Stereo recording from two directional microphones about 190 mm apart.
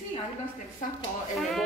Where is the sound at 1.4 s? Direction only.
Centre (ahead or behind).